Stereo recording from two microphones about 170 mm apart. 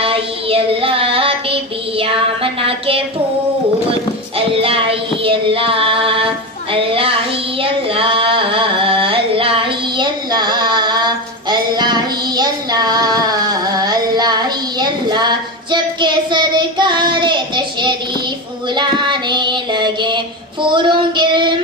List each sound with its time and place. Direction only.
0.0 s child singing: 35° right (ahead or behind)
4.4 s music: 30° right (ahead or behind)
7.6 s a sound: 30° right (ahead or behind)
18.8 s child singing: 25° right (ahead or behind)